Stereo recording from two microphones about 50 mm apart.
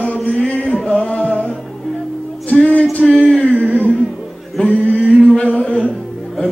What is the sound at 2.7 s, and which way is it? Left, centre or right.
Music, left.